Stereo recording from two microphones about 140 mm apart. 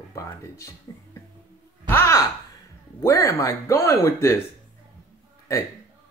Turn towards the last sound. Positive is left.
turn(degrees=20)  # may be behind; listen again after turning